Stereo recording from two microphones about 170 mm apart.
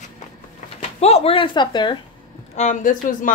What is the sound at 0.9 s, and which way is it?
Speech, 40° left (ahead or behind).